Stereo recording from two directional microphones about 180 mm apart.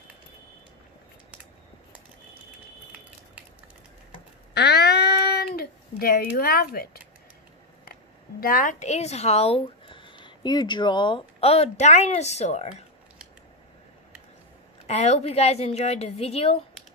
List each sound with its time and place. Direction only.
4.6 s a sound: 65° left (ahead or behind)
8.4 s speech: 50° left (ahead or behind)
14.9 s speech: 35° left (ahead or behind)